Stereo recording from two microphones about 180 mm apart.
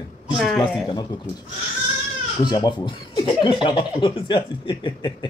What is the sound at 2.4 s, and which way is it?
Speech, 25° left (ahead or behind).